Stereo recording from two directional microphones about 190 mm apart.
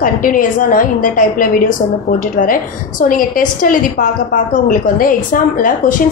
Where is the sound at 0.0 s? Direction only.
45° left (ahead or behind).